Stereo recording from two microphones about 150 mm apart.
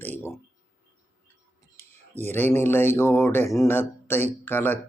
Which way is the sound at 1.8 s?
15° left (ahead or behind).